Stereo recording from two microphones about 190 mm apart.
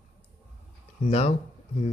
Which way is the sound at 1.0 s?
35° left (ahead or behind).